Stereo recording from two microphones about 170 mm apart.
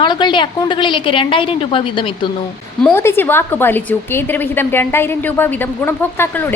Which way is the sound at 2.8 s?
15° left (ahead or behind).